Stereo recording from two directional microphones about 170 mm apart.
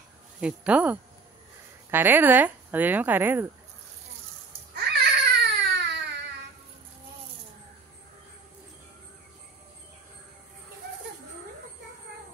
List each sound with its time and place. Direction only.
0.4 s speech: 5° right (ahead or behind)
4.7 s baby cry: 70° right (ahead or behind)